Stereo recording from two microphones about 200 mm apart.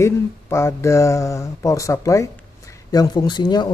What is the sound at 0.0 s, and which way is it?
Speech, 15° left (ahead or behind).